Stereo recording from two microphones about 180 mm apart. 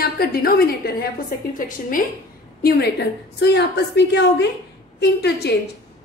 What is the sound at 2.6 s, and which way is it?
A woman's voice, 60° left (ahead or behind).